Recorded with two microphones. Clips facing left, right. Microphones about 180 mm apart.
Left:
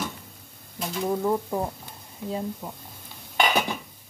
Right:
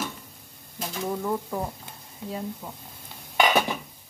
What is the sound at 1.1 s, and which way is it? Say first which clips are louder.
Speech: left 4 dB; 20° left (ahead or behind).